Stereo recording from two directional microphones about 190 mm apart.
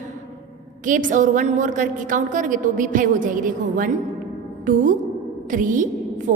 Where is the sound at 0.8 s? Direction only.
40° right (ahead or behind).